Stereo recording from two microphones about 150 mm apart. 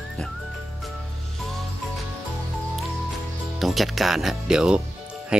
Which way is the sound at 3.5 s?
Centre (ahead or behind).